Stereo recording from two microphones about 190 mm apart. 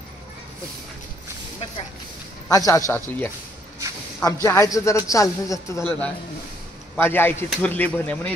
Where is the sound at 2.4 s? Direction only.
15° left (ahead or behind).